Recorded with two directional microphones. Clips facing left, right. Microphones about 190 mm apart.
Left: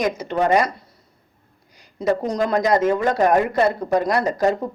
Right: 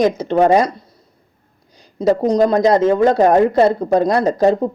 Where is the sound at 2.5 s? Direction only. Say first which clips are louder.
Right 5 dB; 25° right (ahead or behind).